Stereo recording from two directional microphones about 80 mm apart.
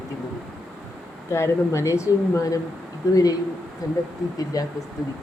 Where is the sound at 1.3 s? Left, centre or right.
Left.